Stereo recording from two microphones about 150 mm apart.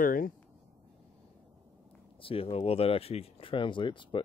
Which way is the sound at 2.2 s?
40° left (ahead or behind).